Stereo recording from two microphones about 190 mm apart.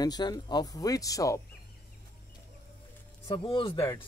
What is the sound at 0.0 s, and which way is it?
Speech, 20° left (ahead or behind).